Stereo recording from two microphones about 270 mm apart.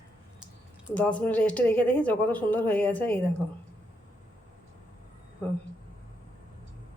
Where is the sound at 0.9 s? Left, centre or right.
Centre.